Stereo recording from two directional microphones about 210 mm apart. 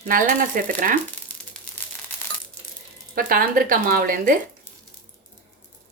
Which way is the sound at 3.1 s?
45° right (ahead or behind).